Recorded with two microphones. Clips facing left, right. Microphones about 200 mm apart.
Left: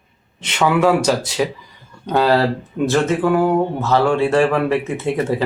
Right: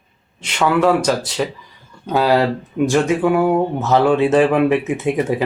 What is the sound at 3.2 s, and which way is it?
Speech, centre (ahead or behind).